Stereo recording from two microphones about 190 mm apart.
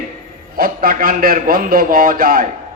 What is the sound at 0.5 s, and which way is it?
A man's voice, 50° right (ahead or behind).